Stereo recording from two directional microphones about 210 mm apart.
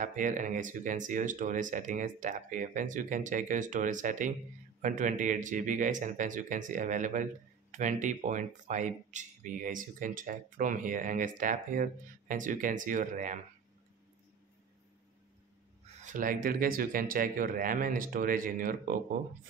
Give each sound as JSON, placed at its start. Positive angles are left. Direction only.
{"t": 0.0, "sound": "speech", "side_deg": -40}
{"t": 16.0, "sound": "speech", "side_deg": -40}